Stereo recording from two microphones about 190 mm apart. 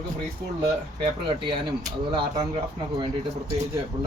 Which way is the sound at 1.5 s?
25° right (ahead or behind).